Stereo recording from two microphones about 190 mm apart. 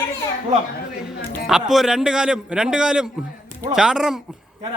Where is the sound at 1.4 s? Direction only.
Centre (ahead or behind).